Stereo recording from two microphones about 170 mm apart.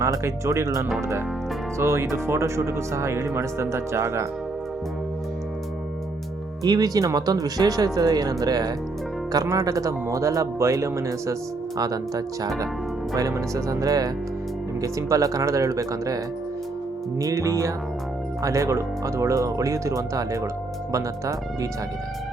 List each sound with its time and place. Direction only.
0.0 s speech: 15° right (ahead or behind)
6.6 s speech: 20° right (ahead or behind)